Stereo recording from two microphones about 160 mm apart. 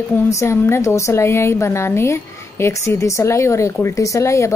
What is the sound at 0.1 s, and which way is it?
A woman's voice, 20° left (ahead or behind).